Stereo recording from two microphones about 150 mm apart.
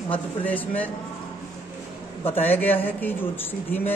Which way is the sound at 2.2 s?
15° left (ahead or behind).